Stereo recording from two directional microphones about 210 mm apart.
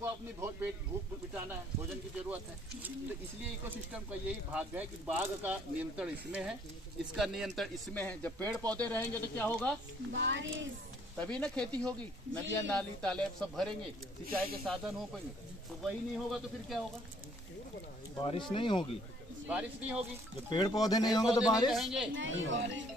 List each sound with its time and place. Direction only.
0.0 s speech: 10° right (ahead or behind)
2.2 s speech: 5° right (ahead or behind); by 9.8 s 10° left (ahead or behind)
10.1 s a woman's voice: 60° right (ahead or behind)
11.1 s speech: 5° left (ahead or behind)
18.1 s speech: 25° left (ahead or behind)
19.4 s speech: 5° right (ahead or behind)
20.4 s speech: 20° left (ahead or behind)
21.7 s speech: centre (ahead or behind)
22.1 s a woman's voice: 65° right (ahead or behind)